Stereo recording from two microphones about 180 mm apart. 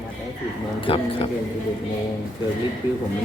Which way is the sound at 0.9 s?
30° left (ahead or behind).